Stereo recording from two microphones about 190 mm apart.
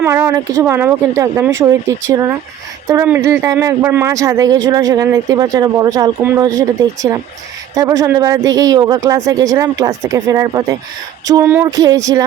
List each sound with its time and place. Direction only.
0.0 s a man's voice: 15° right (ahead or behind)